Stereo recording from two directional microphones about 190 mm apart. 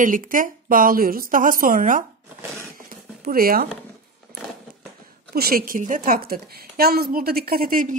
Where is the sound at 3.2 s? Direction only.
50° right (ahead or behind).